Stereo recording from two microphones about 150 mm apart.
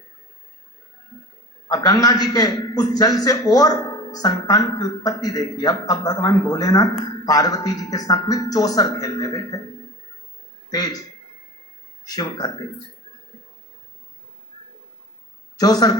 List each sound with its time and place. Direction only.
1.6 s a man's voice: 25° left (ahead or behind)
10.7 s a man's voice: 25° left (ahead or behind)
12.0 s a man's voice: 25° left (ahead or behind)
15.5 s a man's voice: 25° left (ahead or behind)